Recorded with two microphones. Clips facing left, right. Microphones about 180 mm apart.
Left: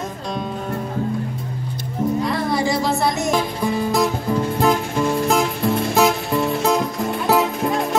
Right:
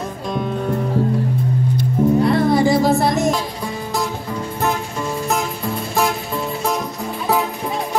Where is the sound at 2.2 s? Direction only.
55° right (ahead or behind).